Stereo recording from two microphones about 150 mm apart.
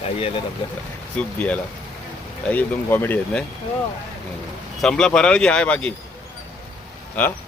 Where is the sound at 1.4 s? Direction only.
10° left (ahead or behind).